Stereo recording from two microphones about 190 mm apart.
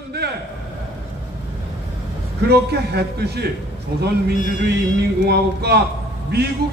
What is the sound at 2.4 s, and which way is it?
A man's voice, 60° right (ahead or behind).